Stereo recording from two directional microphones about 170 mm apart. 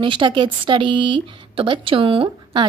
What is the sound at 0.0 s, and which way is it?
A woman's voice, 30° right (ahead or behind).